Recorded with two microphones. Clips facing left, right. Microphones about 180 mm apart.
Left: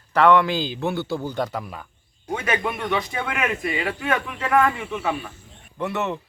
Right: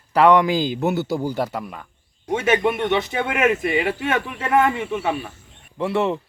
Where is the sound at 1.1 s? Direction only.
10° right (ahead or behind).